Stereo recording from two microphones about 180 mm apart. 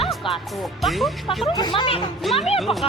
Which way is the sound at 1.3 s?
25° left (ahead or behind).